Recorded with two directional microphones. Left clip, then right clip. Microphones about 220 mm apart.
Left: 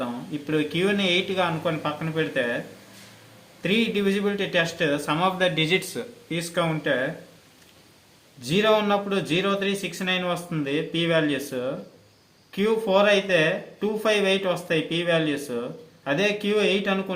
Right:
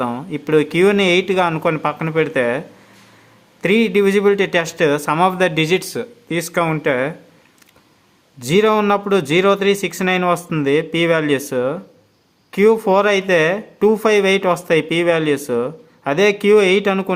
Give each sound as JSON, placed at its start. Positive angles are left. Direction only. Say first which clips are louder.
{"t": 0.0, "sound": "speech", "louder": "right 9 dB", "side_deg": -40}
{"t": 3.6, "sound": "speech", "louder": "right 9 dB", "side_deg": -40}
{"t": 8.4, "sound": "speech", "louder": "right 6 dB", "side_deg": -45}